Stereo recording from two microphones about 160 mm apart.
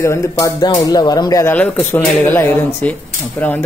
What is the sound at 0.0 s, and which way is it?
Speech, 20° left (ahead or behind).